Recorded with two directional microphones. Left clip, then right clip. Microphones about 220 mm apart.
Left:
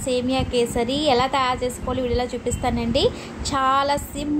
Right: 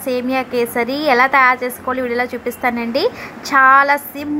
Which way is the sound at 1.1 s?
10° right (ahead or behind).